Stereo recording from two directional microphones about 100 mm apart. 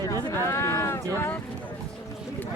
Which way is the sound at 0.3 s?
25° left (ahead or behind).